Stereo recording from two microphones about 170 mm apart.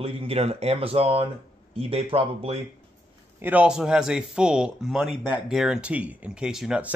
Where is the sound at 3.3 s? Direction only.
10° right (ahead or behind).